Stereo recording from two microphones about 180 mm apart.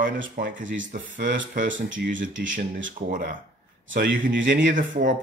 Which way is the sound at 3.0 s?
50° right (ahead or behind).